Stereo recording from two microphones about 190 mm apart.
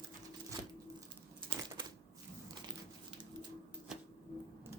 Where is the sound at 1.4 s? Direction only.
25° right (ahead or behind).